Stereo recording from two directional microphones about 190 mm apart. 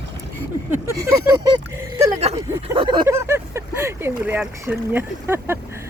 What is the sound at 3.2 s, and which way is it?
Speech, 10° right (ahead or behind).